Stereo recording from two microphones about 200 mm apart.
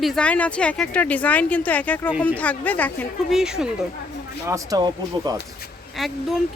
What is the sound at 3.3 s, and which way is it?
Speech, 5° right (ahead or behind).